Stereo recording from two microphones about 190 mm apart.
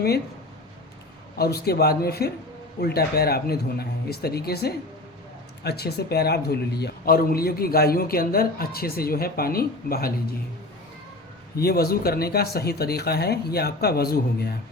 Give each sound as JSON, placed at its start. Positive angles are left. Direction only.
{"t": 1.4, "sound": "speech", "side_deg": 55}
{"t": 11.5, "sound": "speech", "side_deg": 55}